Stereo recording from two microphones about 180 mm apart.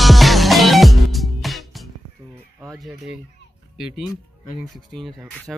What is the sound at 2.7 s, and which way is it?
Fowl, centre (ahead or behind).